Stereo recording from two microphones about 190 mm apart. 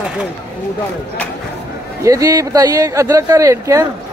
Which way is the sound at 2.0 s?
20° right (ahead or behind).